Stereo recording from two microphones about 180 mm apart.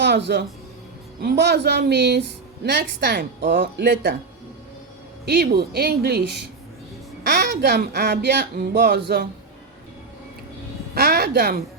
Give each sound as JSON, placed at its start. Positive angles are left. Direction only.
{"t": 0.0, "sound": "speech", "side_deg": -70}
{"t": 5.2, "sound": "speech", "side_deg": -65}
{"t": 10.9, "sound": "a woman's voice", "side_deg": -60}